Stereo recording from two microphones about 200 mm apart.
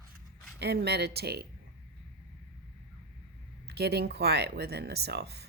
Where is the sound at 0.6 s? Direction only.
55° right (ahead or behind).